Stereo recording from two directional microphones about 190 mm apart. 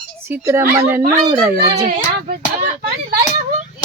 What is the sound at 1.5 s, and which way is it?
A child's voice, 50° right (ahead or behind).